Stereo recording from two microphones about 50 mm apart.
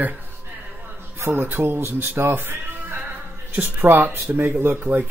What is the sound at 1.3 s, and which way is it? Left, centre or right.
Speech, right.